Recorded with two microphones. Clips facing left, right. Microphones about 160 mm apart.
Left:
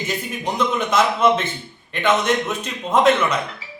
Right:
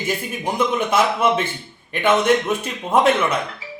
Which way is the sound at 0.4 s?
10° right (ahead or behind).